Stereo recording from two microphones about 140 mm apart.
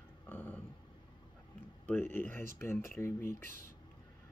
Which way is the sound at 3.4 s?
75° right (ahead or behind).